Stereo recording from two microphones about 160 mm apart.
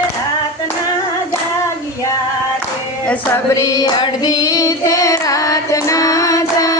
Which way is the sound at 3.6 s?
25° left (ahead or behind).